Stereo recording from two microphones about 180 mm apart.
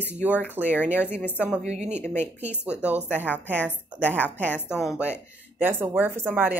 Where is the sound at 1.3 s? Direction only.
5° right (ahead or behind).